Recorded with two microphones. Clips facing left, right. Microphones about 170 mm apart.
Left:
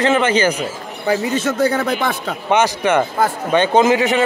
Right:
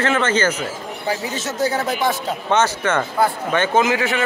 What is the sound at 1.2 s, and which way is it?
Speech, 55° left (ahead or behind).